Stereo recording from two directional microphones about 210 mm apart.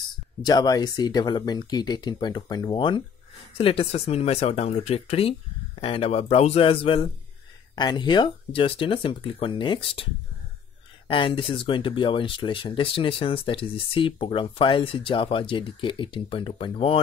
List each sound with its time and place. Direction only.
0.4 s speech: 20° left (ahead or behind)
11.1 s speech: 25° left (ahead or behind)